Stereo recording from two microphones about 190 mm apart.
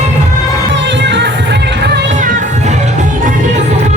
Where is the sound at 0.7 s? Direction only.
70° right (ahead or behind).